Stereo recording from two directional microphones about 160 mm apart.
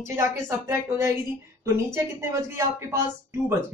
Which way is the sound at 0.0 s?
15° right (ahead or behind).